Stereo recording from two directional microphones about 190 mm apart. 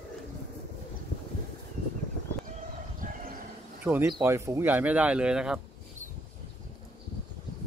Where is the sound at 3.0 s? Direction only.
45° right (ahead or behind).